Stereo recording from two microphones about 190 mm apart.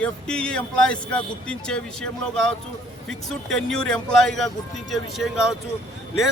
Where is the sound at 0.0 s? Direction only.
5° left (ahead or behind).